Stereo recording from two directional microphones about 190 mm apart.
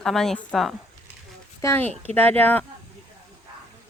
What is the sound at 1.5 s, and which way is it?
Speech, 15° left (ahead or behind).